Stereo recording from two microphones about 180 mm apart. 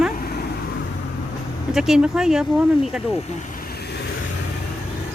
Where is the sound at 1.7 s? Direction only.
5° right (ahead or behind).